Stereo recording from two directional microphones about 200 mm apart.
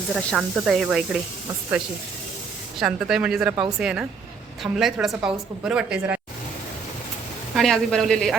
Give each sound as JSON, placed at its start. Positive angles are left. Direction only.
{"t": 0.1, "sound": "a woman's voice", "side_deg": 0}
{"t": 2.7, "sound": "a woman's voice", "side_deg": -5}
{"t": 7.5, "sound": "a woman's voice", "side_deg": 0}